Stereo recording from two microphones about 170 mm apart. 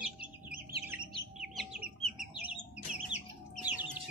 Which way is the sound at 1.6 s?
Centre (ahead or behind).